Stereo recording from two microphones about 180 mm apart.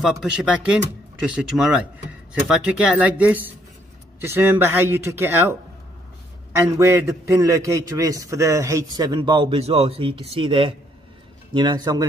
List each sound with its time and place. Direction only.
0.0 s speech: centre (ahead or behind)
3.0 s a man's voice: 10° right (ahead or behind)